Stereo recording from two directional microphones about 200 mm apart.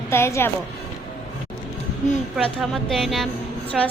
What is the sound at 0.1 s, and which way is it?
Speech, 15° left (ahead or behind).